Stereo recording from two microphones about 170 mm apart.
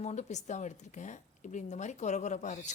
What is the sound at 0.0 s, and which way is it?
Speech, 40° left (ahead or behind).